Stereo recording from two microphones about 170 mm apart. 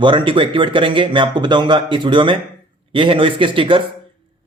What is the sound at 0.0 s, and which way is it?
A man's voice, 30° right (ahead or behind).